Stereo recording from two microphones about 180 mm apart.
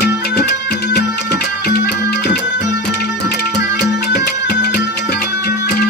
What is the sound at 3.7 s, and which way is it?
Music, 65° left (ahead or behind).